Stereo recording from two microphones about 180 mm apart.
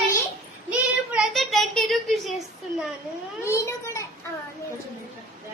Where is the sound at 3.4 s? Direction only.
15° left (ahead or behind).